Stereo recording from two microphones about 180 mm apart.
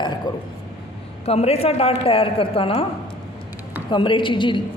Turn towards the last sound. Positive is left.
turn(degrees=25)  # may be behind; listen again after turning